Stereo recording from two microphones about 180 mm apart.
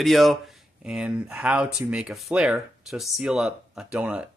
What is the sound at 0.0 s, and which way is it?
Speech, centre (ahead or behind).